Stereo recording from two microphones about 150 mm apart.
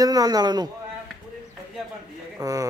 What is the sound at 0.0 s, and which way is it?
Speech, 25° right (ahead or behind).